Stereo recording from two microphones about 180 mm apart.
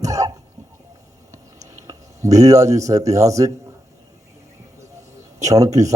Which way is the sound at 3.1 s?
15° right (ahead or behind).